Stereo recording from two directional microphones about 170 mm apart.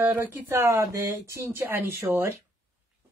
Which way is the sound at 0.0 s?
15° right (ahead or behind).